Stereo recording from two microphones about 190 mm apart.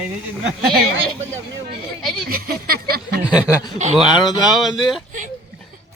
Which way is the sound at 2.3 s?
50° right (ahead or behind).